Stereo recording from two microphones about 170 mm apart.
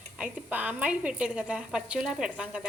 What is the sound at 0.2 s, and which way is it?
A woman's voice, 10° right (ahead or behind).